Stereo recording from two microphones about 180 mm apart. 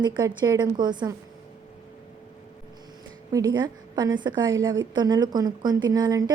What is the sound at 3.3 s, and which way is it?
A woman's voice, 20° right (ahead or behind).